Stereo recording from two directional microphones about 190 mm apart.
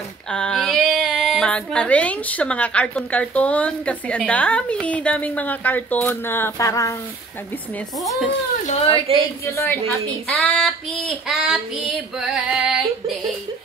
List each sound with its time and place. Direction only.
0.3 s speech: 5° left (ahead or behind)
8.9 s a woman's voice: 30° right (ahead or behind)
9.5 s speech: 10° left (ahead or behind)